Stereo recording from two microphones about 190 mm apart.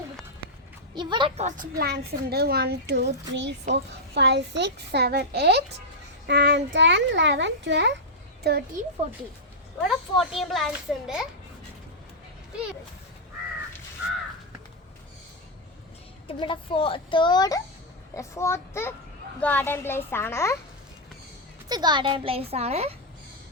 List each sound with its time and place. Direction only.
0.9 s a child's voice: 25° right (ahead or behind)
1.8 s a child's voice: 55° right (ahead or behind)
8.4 s a child's voice: 55° right (ahead or behind)
9.8 s a child's voice: centre (ahead or behind)
16.2 s a child's voice: 25° left (ahead or behind)
21.7 s a child's voice: 20° right (ahead or behind)